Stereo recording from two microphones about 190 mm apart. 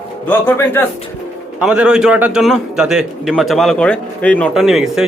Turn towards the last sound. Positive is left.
turn(degrees=0)  # may be behind; listen again after turning